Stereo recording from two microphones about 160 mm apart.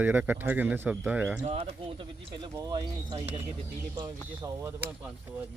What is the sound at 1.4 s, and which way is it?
Speech, 40° right (ahead or behind).